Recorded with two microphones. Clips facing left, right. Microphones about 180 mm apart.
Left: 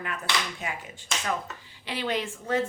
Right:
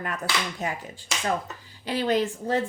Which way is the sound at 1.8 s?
40° right (ahead or behind).